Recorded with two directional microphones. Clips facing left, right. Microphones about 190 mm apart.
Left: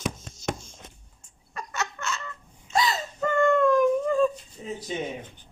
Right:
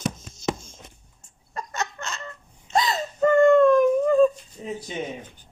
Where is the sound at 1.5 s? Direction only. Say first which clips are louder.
Right 2 dB; 35° right (ahead or behind).